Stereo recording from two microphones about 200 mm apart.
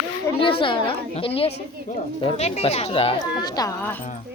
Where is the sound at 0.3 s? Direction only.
25° left (ahead or behind).